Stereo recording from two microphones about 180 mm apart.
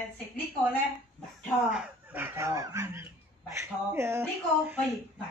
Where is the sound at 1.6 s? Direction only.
5° right (ahead or behind).